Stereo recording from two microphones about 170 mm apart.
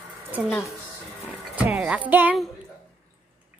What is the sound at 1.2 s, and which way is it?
Speech, 10° right (ahead or behind).